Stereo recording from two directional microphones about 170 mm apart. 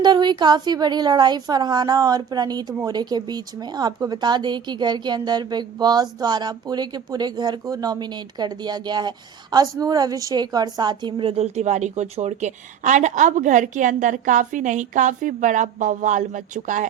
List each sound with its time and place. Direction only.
0.0 s a woman's voice: 25° right (ahead or behind); by 16.9 s 45° right (ahead or behind)